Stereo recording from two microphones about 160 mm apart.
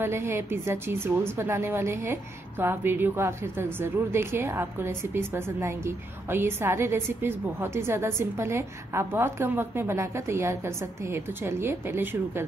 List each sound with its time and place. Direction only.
0.0 s a woman's voice: 15° right (ahead or behind)